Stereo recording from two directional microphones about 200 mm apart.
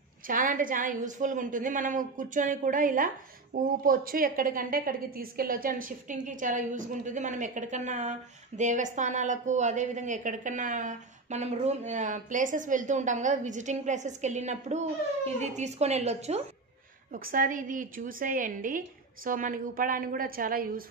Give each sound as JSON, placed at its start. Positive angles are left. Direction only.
{"t": 0.3, "sound": "a woman's voice", "side_deg": -40}
{"t": 17.1, "sound": "a woman's voice", "side_deg": -45}